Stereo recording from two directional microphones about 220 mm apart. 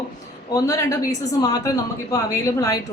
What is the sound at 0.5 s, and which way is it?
A woman's voice, 15° left (ahead or behind).